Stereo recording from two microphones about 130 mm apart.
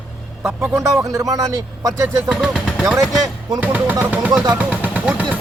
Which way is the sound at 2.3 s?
10° right (ahead or behind).